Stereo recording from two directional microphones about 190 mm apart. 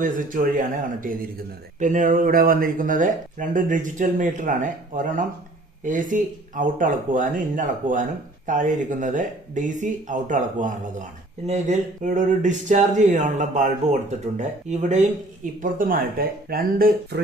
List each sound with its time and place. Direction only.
0.0 s speech: 45° right (ahead or behind)